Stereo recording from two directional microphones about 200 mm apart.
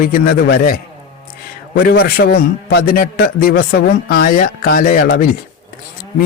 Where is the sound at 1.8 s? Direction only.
50° left (ahead or behind).